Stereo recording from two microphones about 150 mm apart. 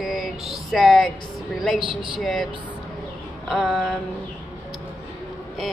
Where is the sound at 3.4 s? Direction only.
Centre (ahead or behind).